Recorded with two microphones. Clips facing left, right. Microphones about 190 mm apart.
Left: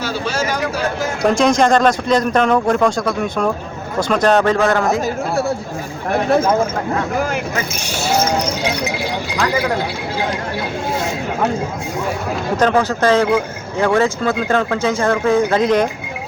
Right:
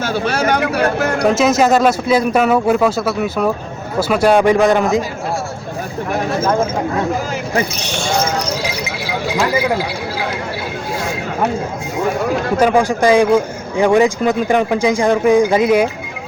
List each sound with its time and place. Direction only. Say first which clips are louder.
0.0 s speech: right 4 dB; 55° right (ahead or behind)
1.2 s speech: even; 5° right (ahead or behind)
12.5 s speech: right 1 dB; 10° right (ahead or behind)